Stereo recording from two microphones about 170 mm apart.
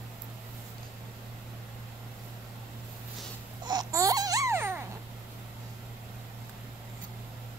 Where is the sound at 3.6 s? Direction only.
20° right (ahead or behind).